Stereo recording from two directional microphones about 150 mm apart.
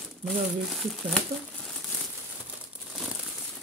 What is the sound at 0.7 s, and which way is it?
Speech, centre (ahead or behind).